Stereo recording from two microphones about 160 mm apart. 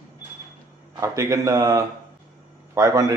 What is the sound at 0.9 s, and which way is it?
A man's voice, 20° right (ahead or behind).